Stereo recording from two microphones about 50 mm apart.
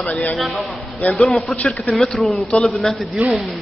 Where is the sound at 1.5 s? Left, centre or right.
Left.